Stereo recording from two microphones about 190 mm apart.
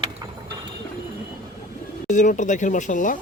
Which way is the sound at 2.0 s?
40° left (ahead or behind).